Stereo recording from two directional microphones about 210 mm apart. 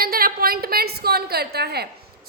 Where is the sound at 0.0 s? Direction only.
45° right (ahead or behind).